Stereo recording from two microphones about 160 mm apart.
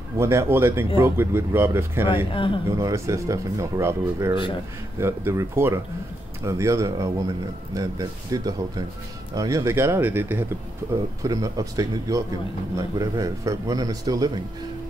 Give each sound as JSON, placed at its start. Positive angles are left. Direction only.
{"t": 0.2, "sound": "speech", "side_deg": -15}
{"t": 2.3, "sound": "speech", "side_deg": 30}
{"t": 2.8, "sound": "speech", "side_deg": -20}